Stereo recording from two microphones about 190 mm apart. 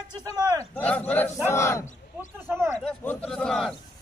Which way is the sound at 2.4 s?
15° right (ahead or behind).